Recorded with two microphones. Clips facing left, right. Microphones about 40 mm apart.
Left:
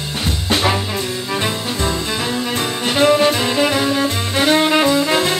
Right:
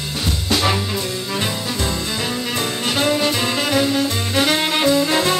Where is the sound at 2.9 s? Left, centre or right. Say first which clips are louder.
Left 6 dB; left.